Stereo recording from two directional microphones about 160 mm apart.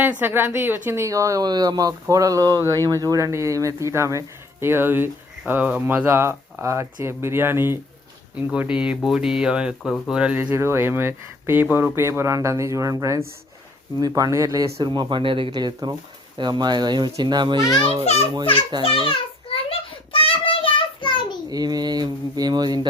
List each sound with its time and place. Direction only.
0.0 s speech: 10° right (ahead or behind); by 17.6 s 30° right (ahead or behind)
18.0 s a child's voice: 40° left (ahead or behind)
18.8 s a sound: 35° left (ahead or behind)
20.1 s child singing: 35° left (ahead or behind)
21.5 s speech: 25° right (ahead or behind)